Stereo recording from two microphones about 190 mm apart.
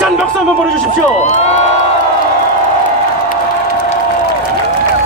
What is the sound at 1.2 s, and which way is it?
Speech, 35° left (ahead or behind).